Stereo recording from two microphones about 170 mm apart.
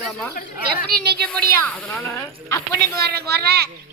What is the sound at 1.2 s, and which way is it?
A woman's voice, 5° left (ahead or behind).